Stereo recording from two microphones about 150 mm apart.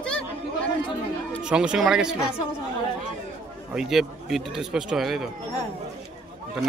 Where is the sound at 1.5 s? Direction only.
5° right (ahead or behind).